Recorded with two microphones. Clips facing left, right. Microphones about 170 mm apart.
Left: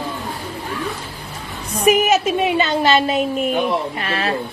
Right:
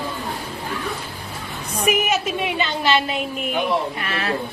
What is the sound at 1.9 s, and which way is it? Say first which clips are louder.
A woman's voice: left 6 dB; 35° left (ahead or behind).